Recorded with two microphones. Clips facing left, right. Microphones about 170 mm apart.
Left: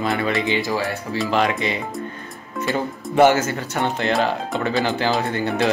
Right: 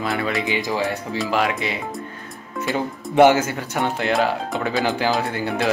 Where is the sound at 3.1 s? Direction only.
15° right (ahead or behind).